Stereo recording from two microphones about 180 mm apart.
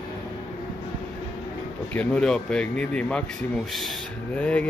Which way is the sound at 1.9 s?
5° left (ahead or behind).